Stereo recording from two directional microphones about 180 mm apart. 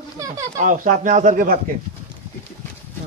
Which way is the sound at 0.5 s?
50° right (ahead or behind).